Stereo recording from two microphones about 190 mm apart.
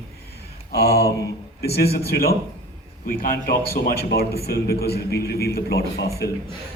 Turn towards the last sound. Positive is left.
turn(degrees=55)  # may be behind; listen again after turning